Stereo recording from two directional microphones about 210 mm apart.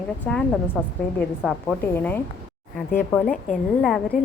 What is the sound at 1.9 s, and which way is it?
A woman's voice, 10° left (ahead or behind).